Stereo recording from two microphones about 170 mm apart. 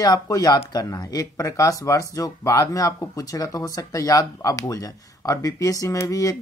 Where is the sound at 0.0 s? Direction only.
20° left (ahead or behind).